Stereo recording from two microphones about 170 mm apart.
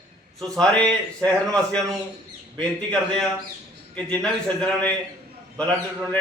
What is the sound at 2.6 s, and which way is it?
A man's voice, 5° left (ahead or behind).